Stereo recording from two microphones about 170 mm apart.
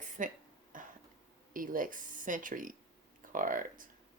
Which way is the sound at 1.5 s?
55° right (ahead or behind).